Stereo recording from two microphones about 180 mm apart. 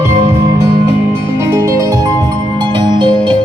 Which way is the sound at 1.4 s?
20° right (ahead or behind).